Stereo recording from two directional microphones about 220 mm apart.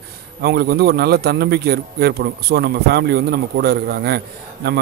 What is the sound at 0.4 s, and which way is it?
A man's voice, 45° right (ahead or behind).